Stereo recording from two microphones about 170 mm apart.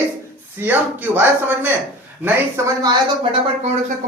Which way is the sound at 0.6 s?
10° right (ahead or behind).